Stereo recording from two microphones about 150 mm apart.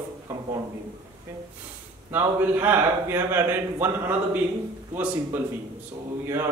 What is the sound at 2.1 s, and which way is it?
A man's voice, 15° right (ahead or behind).